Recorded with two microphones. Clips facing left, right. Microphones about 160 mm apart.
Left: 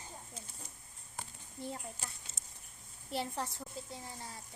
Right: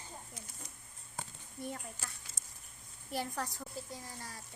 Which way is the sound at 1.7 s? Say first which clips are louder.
Left 1 dB; 25° left (ahead or behind).